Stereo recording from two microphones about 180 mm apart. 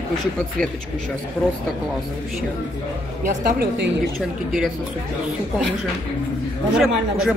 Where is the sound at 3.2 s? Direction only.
55° right (ahead or behind).